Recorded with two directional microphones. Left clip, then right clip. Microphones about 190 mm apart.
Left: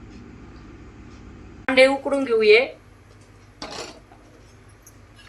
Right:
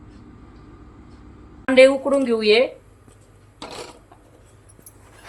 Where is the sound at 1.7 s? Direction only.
65° right (ahead or behind).